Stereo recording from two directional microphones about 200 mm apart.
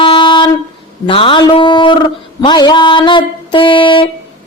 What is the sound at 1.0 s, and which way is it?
Speech, 25° left (ahead or behind).